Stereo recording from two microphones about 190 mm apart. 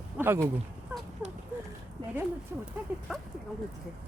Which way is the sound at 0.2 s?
10° right (ahead or behind).